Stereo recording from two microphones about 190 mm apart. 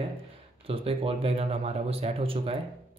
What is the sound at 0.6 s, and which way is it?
Speech, 30° right (ahead or behind).